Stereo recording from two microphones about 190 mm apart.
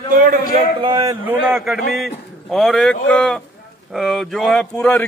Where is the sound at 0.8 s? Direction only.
25° right (ahead or behind).